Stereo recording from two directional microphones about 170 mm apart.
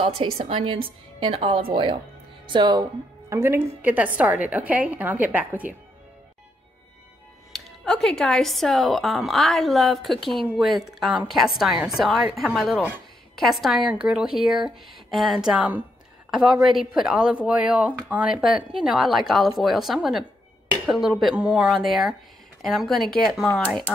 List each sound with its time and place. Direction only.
0.4 s a woman's voice: 30° right (ahead or behind); by 5.7 s 10° right (ahead or behind)
7.5 s a woman's voice: 5° left (ahead or behind)